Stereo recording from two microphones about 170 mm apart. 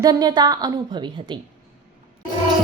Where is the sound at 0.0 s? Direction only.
25° right (ahead or behind).